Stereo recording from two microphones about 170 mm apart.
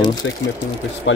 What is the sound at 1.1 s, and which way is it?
Speech, 90° left.